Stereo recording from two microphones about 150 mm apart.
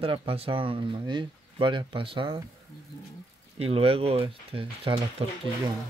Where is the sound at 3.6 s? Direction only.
40° right (ahead or behind).